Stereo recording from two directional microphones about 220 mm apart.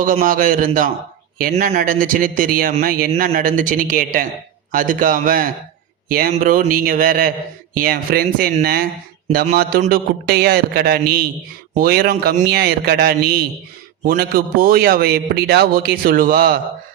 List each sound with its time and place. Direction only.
0.0 s a man's voice: 35° right (ahead or behind)